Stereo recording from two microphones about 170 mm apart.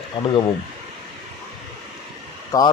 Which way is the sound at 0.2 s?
30° left (ahead or behind).